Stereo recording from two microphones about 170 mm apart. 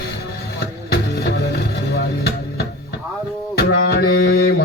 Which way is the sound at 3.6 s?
65° left (ahead or behind).